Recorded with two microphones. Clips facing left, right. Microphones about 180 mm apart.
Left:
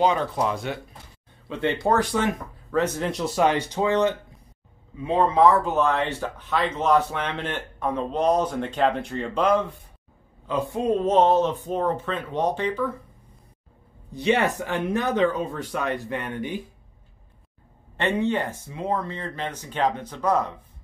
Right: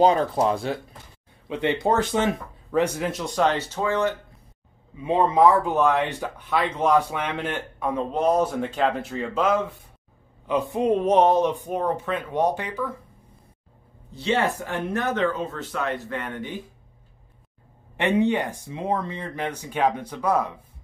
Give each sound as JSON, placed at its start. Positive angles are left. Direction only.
{"t": 0.0, "sound": "speech", "side_deg": -35}
{"t": 1.5, "sound": "speech", "side_deg": -15}
{"t": 3.0, "sound": "speech", "side_deg": 0}
{"t": 5.0, "sound": "speech", "side_deg": -15}
{"t": 10.4, "sound": "speech", "side_deg": -20}
{"t": 14.1, "sound": "speech", "side_deg": 15}
{"t": 17.9, "sound": "speech", "side_deg": -15}